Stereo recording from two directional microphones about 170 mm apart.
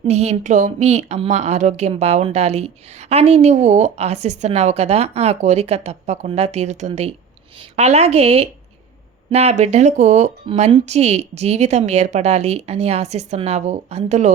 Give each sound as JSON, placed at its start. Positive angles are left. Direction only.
{"t": 0.0, "sound": "a woman's voice", "side_deg": -40}